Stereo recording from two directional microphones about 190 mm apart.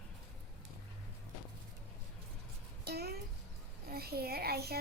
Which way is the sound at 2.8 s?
55° right (ahead or behind).